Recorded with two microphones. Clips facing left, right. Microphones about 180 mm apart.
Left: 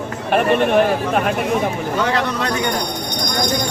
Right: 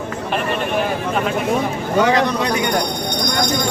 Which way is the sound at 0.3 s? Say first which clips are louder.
Left 7 dB; 55° left (ahead or behind).